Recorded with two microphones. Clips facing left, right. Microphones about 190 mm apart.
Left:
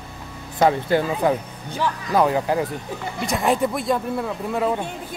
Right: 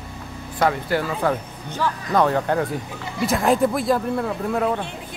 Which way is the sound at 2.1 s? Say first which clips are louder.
Even; 10° left (ahead or behind).